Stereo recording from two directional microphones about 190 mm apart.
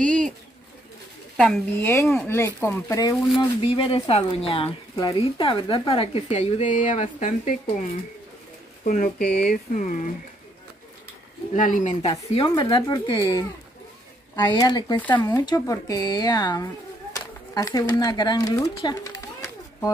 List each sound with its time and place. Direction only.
0.0 s bird: 5° left (ahead or behind)
1.3 s speech: 5° left (ahead or behind); by 3.4 s 20° left (ahead or behind)
3.6 s speech: 30° left (ahead or behind)
8.8 s speech: 45° left (ahead or behind)
11.5 s speech: 45° left (ahead or behind)
12.3 s speech: 25° left (ahead or behind)
15.0 s speech: 10° left (ahead or behind)
15.2 s speech: 20° left (ahead or behind)